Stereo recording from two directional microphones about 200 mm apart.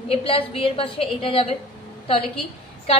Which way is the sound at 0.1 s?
30° left (ahead or behind).